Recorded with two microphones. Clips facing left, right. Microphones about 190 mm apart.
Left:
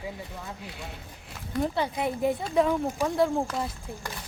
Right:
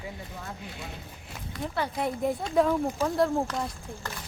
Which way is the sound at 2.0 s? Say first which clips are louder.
Left 1 dB; centre (ahead or behind).